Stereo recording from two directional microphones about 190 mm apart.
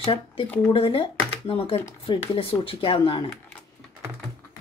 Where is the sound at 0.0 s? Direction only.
25° left (ahead or behind).